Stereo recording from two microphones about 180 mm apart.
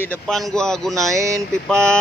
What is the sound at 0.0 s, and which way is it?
Speech, 5° left (ahead or behind).